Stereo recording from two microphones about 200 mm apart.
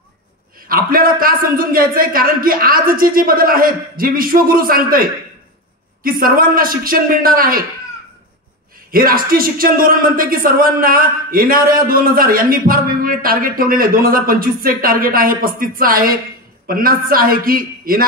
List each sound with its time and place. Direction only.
0.7 s speech: 45° right (ahead or behind)
8.9 s speech: 45° right (ahead or behind)